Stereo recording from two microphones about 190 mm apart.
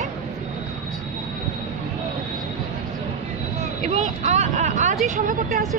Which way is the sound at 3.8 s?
35° right (ahead or behind).